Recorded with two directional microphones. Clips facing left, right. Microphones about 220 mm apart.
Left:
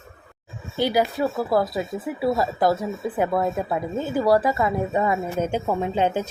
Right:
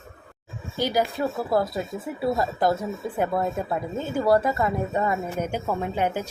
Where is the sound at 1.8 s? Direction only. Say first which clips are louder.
Left 3 dB; 5° left (ahead or behind).